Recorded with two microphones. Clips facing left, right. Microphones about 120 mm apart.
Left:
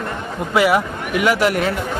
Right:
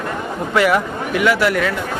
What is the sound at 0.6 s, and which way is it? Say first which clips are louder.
Speech: even; 10° left (ahead or behind).